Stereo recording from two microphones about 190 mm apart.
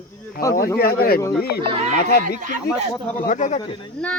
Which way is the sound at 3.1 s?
45° left (ahead or behind).